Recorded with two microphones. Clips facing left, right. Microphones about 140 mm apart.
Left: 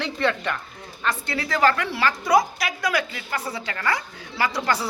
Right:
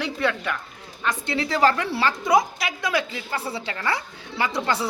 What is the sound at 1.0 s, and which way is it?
A woman's voice, 20° right (ahead or behind).